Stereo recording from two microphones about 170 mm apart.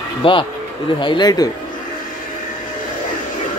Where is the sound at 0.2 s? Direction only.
30° left (ahead or behind).